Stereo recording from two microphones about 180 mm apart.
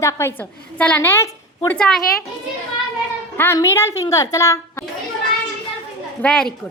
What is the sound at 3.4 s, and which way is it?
A woman's voice, 15° left (ahead or behind).